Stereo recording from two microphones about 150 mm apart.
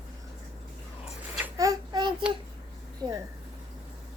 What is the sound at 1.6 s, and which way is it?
Child singing, 25° right (ahead or behind).